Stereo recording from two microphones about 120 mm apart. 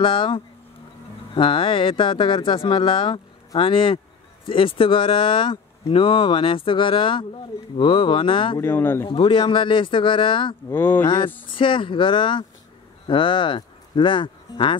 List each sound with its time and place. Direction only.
0.0 s speech: 45° left (ahead or behind)
8.5 s speech: 20° left (ahead or behind)
9.0 s speech: 45° left (ahead or behind)
10.7 s speech: 15° left (ahead or behind)
11.1 s speech: 45° left (ahead or behind)